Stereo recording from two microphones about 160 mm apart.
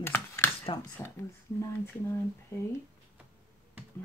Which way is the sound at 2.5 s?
20° left (ahead or behind).